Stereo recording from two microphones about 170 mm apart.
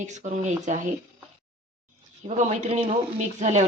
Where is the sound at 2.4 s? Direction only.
45° right (ahead or behind).